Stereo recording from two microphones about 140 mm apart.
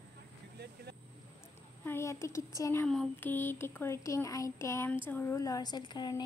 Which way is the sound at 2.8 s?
10° left (ahead or behind).